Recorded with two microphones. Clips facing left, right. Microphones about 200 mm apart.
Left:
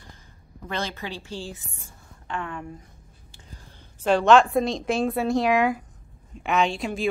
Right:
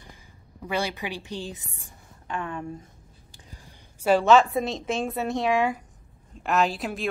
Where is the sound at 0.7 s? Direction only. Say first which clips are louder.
Right 2 dB; 10° right (ahead or behind).